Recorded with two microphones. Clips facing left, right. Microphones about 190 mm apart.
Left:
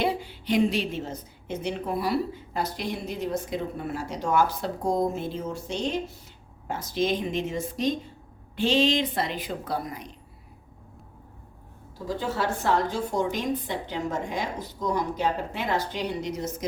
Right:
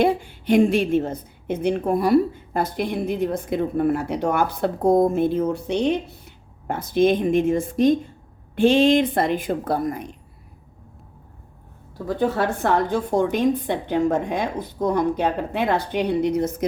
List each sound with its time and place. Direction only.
0.0 s a woman's voice: 50° right (ahead or behind)
12.0 s a woman's voice: 55° right (ahead or behind)